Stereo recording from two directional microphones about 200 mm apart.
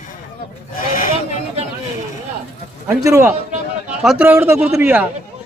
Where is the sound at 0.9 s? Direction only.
40° left (ahead or behind).